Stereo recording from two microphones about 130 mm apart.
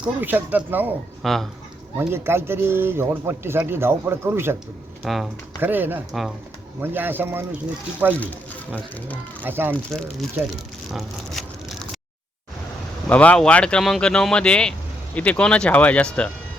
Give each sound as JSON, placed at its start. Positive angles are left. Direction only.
{"t": 0.0, "sound": "speech", "side_deg": -15}
{"t": 1.2, "sound": "speech", "side_deg": 0}
{"t": 2.0, "sound": "a man's voice", "side_deg": -20}
{"t": 5.0, "sound": "speech", "side_deg": 0}
{"t": 5.5, "sound": "speech", "side_deg": -15}
{"t": 8.2, "sound": "speech", "side_deg": 10}
{"t": 9.4, "sound": "speech", "side_deg": -15}
{"t": 9.7, "sound": "speech", "side_deg": 5}
{"t": 10.9, "sound": "vehicle", "side_deg": 0}
{"t": 13.1, "sound": "speech", "side_deg": 10}